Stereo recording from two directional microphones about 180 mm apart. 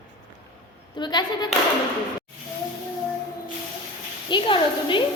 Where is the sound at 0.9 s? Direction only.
25° left (ahead or behind).